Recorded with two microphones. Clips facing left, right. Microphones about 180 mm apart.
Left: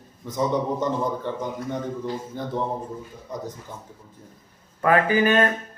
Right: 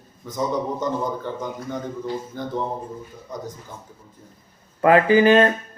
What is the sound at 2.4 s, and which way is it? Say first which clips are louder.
Speech: right 1 dB; 30° left (ahead or behind).